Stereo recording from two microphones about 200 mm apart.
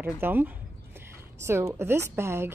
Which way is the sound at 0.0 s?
10° right (ahead or behind).